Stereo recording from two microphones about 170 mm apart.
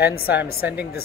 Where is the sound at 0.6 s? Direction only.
10° right (ahead or behind).